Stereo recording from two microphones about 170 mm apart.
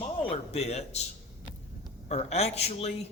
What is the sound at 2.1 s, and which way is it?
Speech, 40° left (ahead or behind).